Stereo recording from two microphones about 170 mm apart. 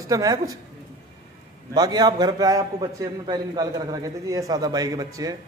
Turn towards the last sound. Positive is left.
turn(degrees=-20)  # may be behind; listen again after turning